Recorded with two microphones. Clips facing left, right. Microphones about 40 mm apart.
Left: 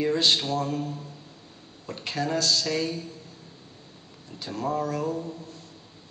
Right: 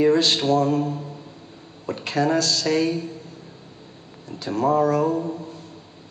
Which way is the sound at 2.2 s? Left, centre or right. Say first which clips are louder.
Right 8 dB; right.